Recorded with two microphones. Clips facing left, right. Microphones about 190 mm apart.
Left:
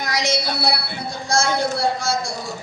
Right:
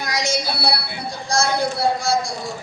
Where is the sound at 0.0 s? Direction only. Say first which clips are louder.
Left 1 dB; 10° right (ahead or behind).